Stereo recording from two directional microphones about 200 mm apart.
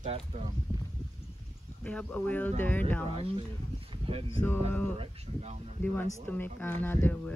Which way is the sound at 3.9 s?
25° right (ahead or behind).